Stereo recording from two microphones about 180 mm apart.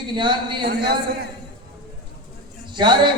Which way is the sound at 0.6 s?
60° right (ahead or behind).